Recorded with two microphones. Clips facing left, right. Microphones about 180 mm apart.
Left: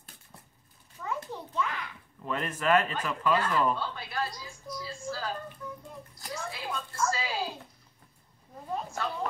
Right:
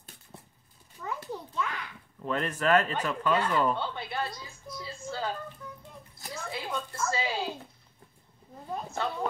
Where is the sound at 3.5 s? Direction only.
25° right (ahead or behind).